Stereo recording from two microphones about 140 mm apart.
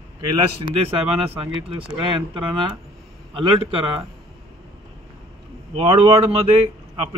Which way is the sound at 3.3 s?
40° right (ahead or behind).